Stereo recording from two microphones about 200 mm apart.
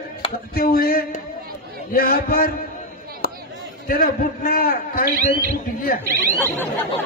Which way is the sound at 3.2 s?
50° left (ahead or behind).